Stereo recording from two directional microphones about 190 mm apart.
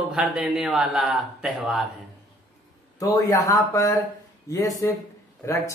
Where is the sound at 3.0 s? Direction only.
20° left (ahead or behind).